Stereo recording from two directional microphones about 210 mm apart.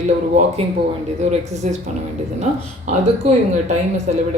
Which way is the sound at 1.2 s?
35° right (ahead or behind).